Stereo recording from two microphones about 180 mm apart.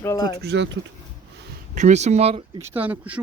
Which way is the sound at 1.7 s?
40° right (ahead or behind).